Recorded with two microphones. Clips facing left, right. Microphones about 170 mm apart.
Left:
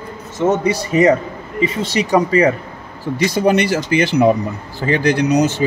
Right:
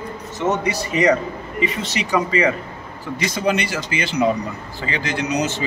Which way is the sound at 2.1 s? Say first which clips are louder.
Left 5 dB; 40° left (ahead or behind).